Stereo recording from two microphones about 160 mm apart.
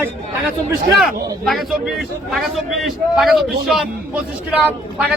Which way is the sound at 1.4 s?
Centre (ahead or behind).